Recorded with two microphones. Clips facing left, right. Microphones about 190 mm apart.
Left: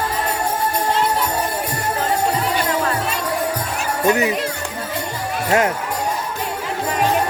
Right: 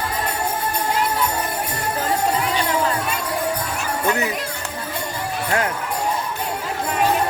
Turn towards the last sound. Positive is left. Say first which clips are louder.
# left 5 dB
turn(degrees=25)  # may be behind; listen again after turning